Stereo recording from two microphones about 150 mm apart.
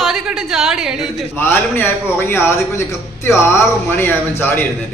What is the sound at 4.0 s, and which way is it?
Speech, 15° left (ahead or behind).